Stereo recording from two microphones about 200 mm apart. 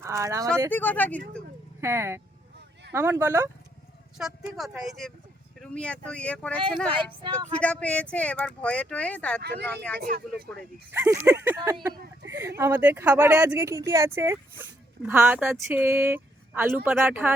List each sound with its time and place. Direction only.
0.0 s speech: 15° right (ahead or behind)
0.7 s speech: 10° left (ahead or behind)
1.8 s speech: 15° right (ahead or behind)
4.2 s speech: centre (ahead or behind)
7.6 s speech: 5° left (ahead or behind)
9.4 s speech: 55° right (ahead or behind)
9.6 s speech: 5° left (ahead or behind)
10.0 s speech: 50° right (ahead or behind)
10.9 s speech: 10° right (ahead or behind)
11.9 s a sound: 60° right (ahead or behind)
12.4 s speech: 15° right (ahead or behind)